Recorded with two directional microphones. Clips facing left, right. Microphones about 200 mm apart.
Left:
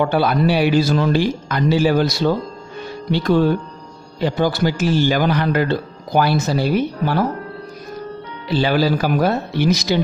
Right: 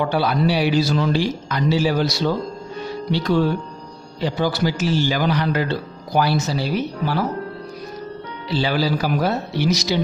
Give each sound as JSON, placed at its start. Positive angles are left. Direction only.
{"t": 0.0, "sound": "a man's voice", "side_deg": 55}
{"t": 8.5, "sound": "a man's voice", "side_deg": 55}